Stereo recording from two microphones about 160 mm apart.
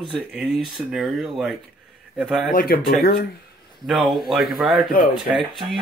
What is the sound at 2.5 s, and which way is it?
Speech, 65° left (ahead or behind).